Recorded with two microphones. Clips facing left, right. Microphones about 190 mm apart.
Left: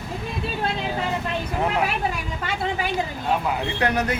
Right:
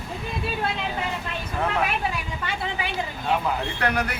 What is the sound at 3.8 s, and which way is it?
Speech, 20° left (ahead or behind).